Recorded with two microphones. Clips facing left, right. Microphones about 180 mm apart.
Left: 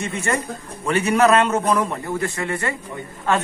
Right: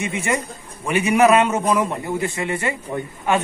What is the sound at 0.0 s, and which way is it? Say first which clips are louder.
A man's voice: right 1 dB; 15° right (ahead or behind).